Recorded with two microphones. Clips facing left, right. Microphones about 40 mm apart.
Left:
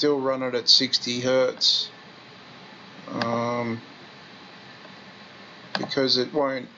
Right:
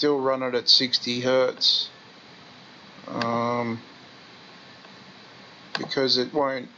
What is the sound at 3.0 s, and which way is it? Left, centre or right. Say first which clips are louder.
Speech: even; centre.